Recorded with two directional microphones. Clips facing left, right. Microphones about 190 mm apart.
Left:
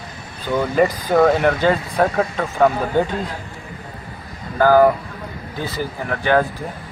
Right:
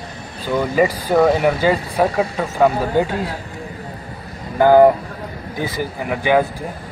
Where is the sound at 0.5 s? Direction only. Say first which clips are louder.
Even; 10° right (ahead or behind).